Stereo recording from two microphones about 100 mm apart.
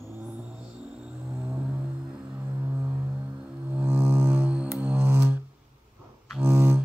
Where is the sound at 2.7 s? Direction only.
15° right (ahead or behind).